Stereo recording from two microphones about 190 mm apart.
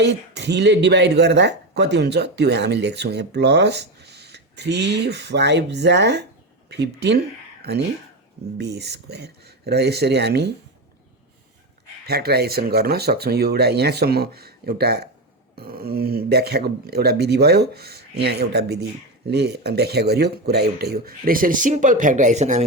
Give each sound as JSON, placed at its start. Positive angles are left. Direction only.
{"t": 0.0, "sound": "speech", "side_deg": -65}
{"t": 8.5, "sound": "speech", "side_deg": -60}
{"t": 12.0, "sound": "speech", "side_deg": -55}